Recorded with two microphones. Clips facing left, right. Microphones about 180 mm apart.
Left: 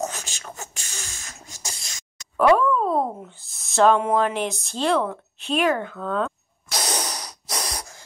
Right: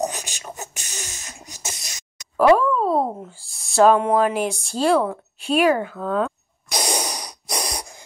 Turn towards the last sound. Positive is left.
turn(degrees=-15)  # may be behind; listen again after turning